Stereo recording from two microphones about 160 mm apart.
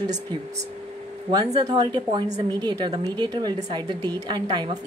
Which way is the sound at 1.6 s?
25° right (ahead or behind).